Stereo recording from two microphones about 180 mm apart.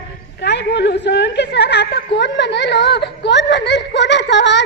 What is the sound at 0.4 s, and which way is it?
A woman's voice, 70° left (ahead or behind).